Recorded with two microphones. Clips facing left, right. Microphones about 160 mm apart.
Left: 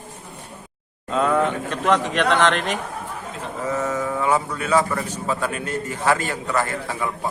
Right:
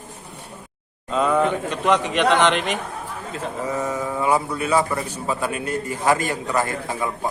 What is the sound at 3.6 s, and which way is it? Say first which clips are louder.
A man's voice: left 2 dB; 10° right (ahead or behind).